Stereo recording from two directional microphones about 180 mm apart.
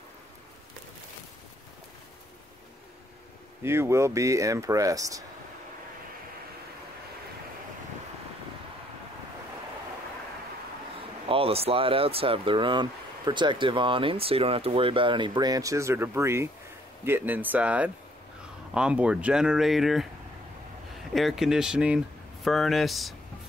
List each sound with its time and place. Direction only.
3.6 s speech: 15° right (ahead or behind)
11.2 s speech: 30° right (ahead or behind); by 20.1 s centre (ahead or behind)
21.1 s speech: centre (ahead or behind)